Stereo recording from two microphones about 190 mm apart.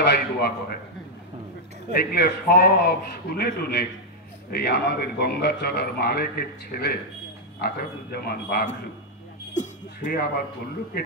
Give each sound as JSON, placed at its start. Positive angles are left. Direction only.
{"t": 0.0, "sound": "a man's voice", "side_deg": 55}
{"t": 2.1, "sound": "a man's voice", "side_deg": 55}
{"t": 9.5, "sound": "speech", "side_deg": 40}